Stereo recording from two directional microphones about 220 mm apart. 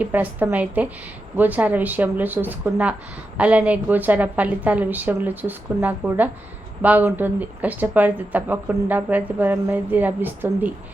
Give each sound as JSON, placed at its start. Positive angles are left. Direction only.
{"t": 0.0, "sound": "speech", "side_deg": -5}